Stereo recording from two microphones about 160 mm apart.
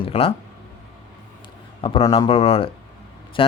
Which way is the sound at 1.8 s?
35° left (ahead or behind).